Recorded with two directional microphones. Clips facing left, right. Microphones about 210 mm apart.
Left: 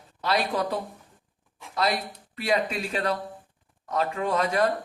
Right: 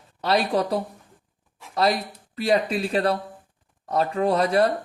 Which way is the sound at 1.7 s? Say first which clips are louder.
Right 4 dB; 35° right (ahead or behind).